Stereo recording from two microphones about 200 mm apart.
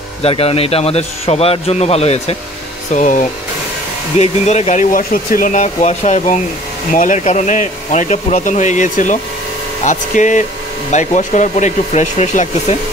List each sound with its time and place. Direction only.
0.2 s a man's voice: 30° left (ahead or behind)